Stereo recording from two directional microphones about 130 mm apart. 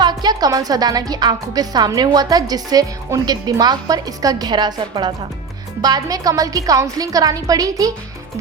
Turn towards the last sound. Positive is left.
turn(degrees=-25)  # may be behind; listen again after turning